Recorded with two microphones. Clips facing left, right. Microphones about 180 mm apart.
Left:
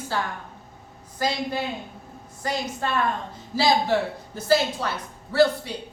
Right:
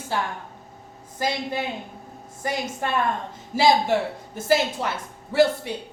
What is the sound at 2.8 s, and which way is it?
A woman's voice, 15° right (ahead or behind).